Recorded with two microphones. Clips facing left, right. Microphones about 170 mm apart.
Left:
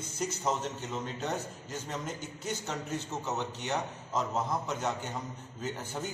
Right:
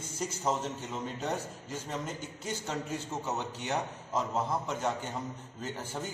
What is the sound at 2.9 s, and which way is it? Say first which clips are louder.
A man's voice: even; 10° right (ahead or behind).